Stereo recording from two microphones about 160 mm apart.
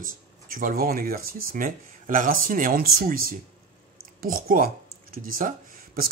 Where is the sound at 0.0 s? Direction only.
55° right (ahead or behind).